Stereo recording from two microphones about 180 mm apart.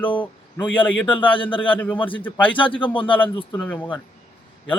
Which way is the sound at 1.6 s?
10° left (ahead or behind).